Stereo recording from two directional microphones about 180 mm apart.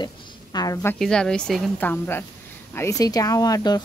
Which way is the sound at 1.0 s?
5° left (ahead or behind).